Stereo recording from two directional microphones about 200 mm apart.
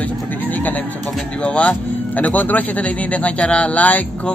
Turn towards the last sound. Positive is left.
turn(degrees=10)  # may be behind; listen again after turning